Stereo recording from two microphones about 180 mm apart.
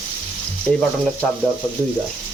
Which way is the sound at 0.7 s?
15° right (ahead or behind).